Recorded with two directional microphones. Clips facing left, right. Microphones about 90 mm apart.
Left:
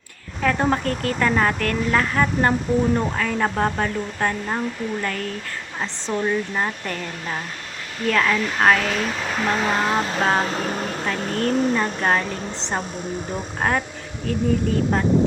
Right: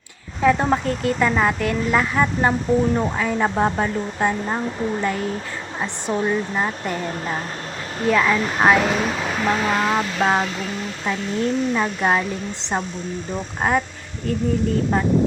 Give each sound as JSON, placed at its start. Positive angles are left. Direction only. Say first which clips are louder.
{"t": 0.6, "sound": "speech", "louder": "right 1 dB", "side_deg": -5}
{"t": 6.9, "sound": "speech", "louder": "right 4 dB", "side_deg": -25}
{"t": 8.0, "sound": "speech", "louder": "right 2 dB", "side_deg": -10}
{"t": 9.6, "sound": "speech", "louder": "right 1 dB", "side_deg": 5}
{"t": 10.4, "sound": "a sound", "louder": "left 2 dB", "side_deg": 40}
{"t": 11.2, "sound": "speech", "louder": "right 1 dB", "side_deg": 55}
{"t": 11.7, "sound": "speech", "louder": "right 1 dB", "side_deg": -5}
{"t": 13.6, "sound": "speech", "louder": "right 2 dB", "side_deg": -5}